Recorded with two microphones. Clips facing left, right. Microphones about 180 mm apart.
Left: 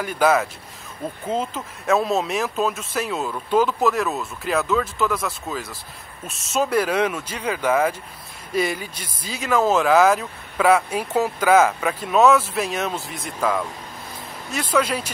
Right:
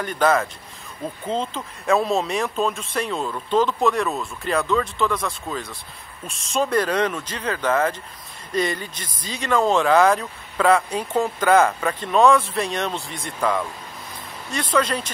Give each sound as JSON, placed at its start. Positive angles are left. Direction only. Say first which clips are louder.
{"t": 0.0, "sound": "speech", "louder": "left 1 dB", "side_deg": 5}